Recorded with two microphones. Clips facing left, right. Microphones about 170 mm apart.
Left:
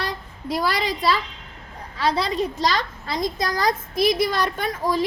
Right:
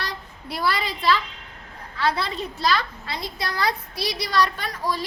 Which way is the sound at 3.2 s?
40° left (ahead or behind).